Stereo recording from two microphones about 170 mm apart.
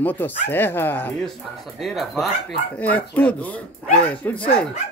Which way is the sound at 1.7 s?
Centre (ahead or behind).